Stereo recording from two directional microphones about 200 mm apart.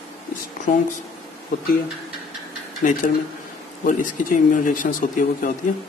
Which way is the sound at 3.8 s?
40° left (ahead or behind).